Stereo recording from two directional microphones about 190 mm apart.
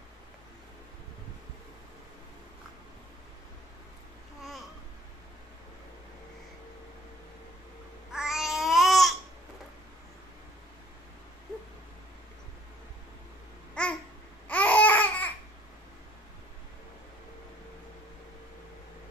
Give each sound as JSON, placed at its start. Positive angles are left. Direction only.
{"t": 4.4, "sound": "babbling", "side_deg": 0}
{"t": 8.1, "sound": "babbling", "side_deg": 0}
{"t": 13.8, "sound": "babbling", "side_deg": 5}